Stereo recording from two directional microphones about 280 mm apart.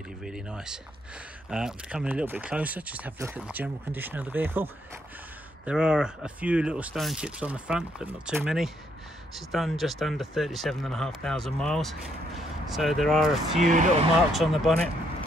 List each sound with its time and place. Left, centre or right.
0.2 s speech: centre
5.7 s speech: centre
13.6 s speech: right
14.3 s speech: centre